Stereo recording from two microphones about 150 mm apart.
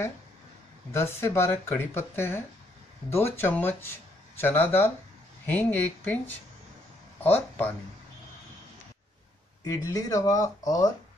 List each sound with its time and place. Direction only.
0.9 s speech: 15° left (ahead or behind)
7.2 s speech: 10° left (ahead or behind)
9.7 s speech: 25° left (ahead or behind)